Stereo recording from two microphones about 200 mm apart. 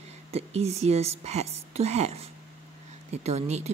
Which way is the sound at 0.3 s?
30° right (ahead or behind).